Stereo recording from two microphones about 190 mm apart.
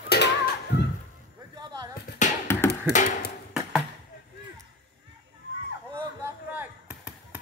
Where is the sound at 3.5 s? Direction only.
Centre (ahead or behind).